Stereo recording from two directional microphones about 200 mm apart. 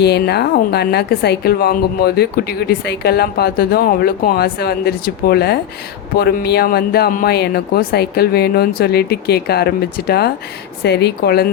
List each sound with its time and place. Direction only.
0.0 s a woman's voice: 55° left (ahead or behind)